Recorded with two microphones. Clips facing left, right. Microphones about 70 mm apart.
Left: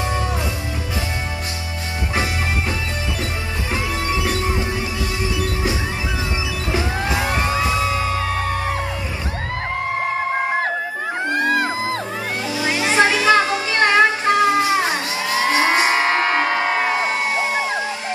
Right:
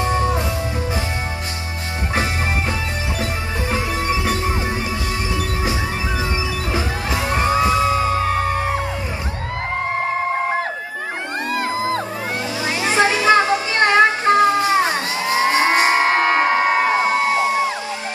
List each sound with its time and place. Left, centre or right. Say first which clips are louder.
0.0 s music: right 4 dB; right
4.2 s music: even; right
7.2 s music: right 7 dB; right
11.4 s music: right 1 dB; left
12.8 s music: even; right